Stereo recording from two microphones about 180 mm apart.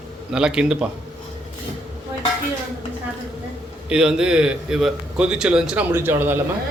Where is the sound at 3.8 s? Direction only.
5° right (ahead or behind).